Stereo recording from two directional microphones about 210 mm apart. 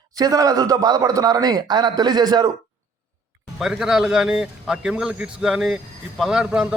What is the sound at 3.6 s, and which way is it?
A man's voice, centre (ahead or behind).